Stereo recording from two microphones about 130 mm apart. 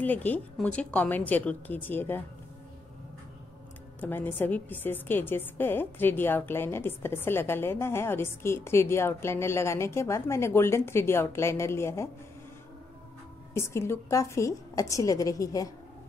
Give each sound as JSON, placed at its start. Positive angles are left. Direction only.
{"t": 0.0, "sound": "a woman's voice", "side_deg": 15}
{"t": 4.0, "sound": "a woman's voice", "side_deg": 15}
{"t": 13.5, "sound": "a woman's voice", "side_deg": 20}